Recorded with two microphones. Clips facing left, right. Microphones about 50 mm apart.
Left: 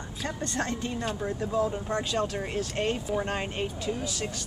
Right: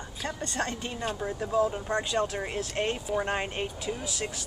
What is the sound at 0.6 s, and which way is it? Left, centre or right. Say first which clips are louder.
Speech: left 1 dB; right.